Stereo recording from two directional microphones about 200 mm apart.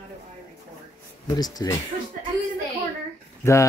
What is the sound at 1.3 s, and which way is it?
Speech, 20° left (ahead or behind).